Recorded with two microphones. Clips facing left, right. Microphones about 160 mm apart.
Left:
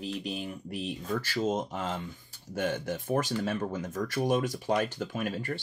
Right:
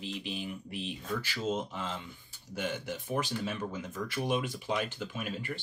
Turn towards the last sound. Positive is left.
turn(degrees=45)  # may be behind; listen again after turning